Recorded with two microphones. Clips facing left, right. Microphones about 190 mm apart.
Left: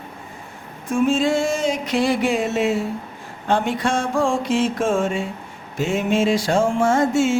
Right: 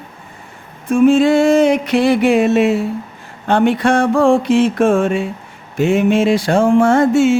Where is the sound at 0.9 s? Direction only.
65° right (ahead or behind).